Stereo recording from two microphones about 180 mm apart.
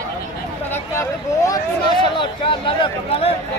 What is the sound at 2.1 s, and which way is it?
Speech, 25° left (ahead or behind).